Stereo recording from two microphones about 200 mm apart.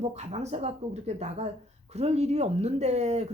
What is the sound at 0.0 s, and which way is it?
Speech, 35° right (ahead or behind).